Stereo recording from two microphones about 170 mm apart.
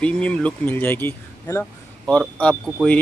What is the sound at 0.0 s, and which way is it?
Speech, 5° left (ahead or behind).